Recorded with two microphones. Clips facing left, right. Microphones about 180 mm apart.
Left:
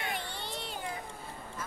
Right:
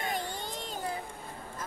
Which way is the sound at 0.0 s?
45° right (ahead or behind).